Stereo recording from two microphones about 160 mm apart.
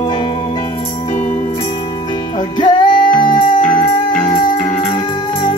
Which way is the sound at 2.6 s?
30° left (ahead or behind).